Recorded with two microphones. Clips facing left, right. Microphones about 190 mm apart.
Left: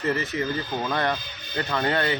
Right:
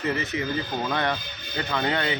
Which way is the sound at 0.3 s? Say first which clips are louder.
Left 1 dB; 40° left (ahead or behind).